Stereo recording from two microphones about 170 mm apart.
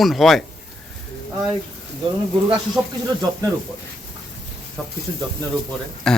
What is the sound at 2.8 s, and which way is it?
Speech, 20° right (ahead or behind).